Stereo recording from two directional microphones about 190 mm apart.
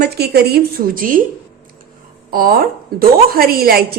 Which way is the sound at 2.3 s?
50° right (ahead or behind).